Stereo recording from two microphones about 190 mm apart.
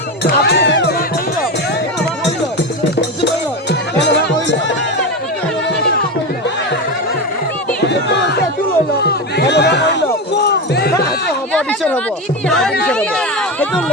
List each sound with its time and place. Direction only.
0.2 s music: 60° left (ahead or behind)
3.7 s music: 65° left (ahead or behind)
9.0 s music: 60° left (ahead or behind)
11.5 s a sound: 5° left (ahead or behind)